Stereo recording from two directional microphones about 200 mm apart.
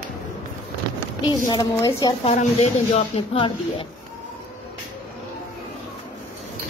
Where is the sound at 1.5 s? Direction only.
20° left (ahead or behind).